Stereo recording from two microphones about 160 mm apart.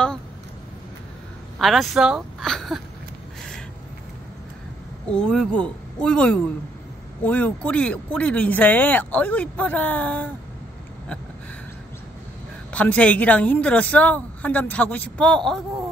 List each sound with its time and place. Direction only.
1.6 s speech: centre (ahead or behind)
5.1 s speech: 5° left (ahead or behind)
12.7 s speech: 10° left (ahead or behind)